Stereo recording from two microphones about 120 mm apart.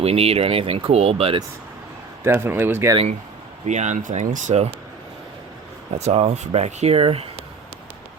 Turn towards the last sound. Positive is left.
turn(degrees=-50)  # may be behind; listen again after turning